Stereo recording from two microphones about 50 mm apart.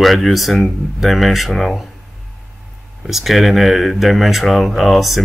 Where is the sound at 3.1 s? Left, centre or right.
Centre.